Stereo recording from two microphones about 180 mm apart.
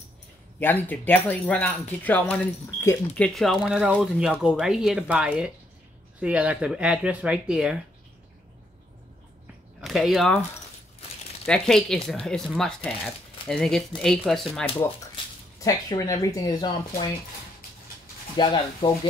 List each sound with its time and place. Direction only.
0.6 s speech: 10° left (ahead or behind)
3.3 s speech: centre (ahead or behind)
9.8 s speech: centre (ahead or behind)
11.4 s speech: 5° left (ahead or behind)
15.6 s speech: 20° left (ahead or behind)
18.3 s speech: 25° left (ahead or behind)